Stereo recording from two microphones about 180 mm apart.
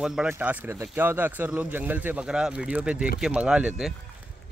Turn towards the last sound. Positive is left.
turn(degrees=-5)  # may be behind; listen again after turning